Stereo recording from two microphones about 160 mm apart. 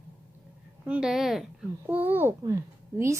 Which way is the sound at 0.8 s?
5° right (ahead or behind).